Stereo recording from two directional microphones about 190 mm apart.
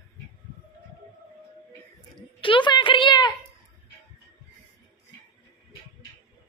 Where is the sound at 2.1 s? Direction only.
25° left (ahead or behind).